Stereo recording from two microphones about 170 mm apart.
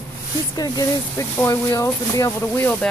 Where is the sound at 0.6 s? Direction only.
20° left (ahead or behind).